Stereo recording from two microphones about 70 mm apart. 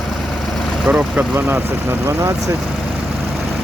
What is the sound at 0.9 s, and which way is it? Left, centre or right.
Speech, centre.